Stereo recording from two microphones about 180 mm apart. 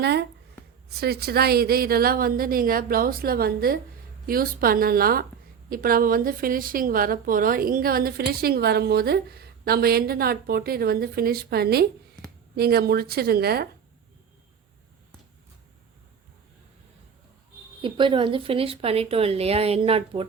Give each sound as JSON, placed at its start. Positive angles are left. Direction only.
{"t": 0.0, "sound": "a woman's voice", "side_deg": -65}
{"t": 17.8, "sound": "speech", "side_deg": -25}